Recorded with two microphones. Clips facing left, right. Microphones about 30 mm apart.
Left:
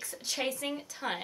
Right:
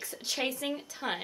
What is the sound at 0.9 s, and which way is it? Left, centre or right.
Speech, centre.